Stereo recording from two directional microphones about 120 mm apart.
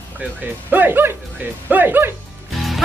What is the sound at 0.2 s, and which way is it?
A man's voice, 15° right (ahead or behind).